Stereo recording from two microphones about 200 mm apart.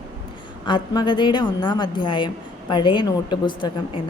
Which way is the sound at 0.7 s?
25° left (ahead or behind).